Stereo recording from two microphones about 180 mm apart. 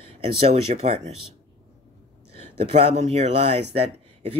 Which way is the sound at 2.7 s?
35° right (ahead or behind).